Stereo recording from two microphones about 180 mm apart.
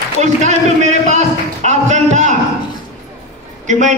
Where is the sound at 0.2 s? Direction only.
40° right (ahead or behind).